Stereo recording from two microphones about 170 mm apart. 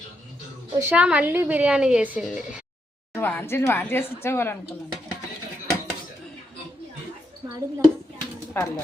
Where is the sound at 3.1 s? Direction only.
10° left (ahead or behind).